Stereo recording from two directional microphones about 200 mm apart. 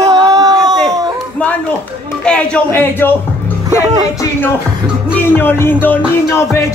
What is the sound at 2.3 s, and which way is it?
Speech, 5° left (ahead or behind).